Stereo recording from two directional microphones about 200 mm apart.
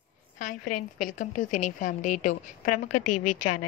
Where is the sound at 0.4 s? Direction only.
40° left (ahead or behind).